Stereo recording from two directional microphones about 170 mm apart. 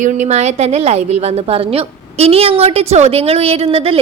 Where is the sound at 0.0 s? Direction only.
45° right (ahead or behind).